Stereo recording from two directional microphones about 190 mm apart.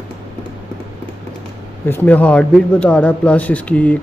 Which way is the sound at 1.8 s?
10° left (ahead or behind).